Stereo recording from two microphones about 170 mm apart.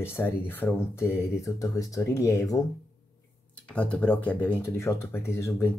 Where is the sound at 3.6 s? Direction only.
5° left (ahead or behind).